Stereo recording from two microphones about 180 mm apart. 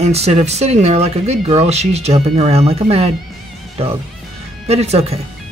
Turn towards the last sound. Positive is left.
turn(degrees=-35)  # may be behind; listen again after turning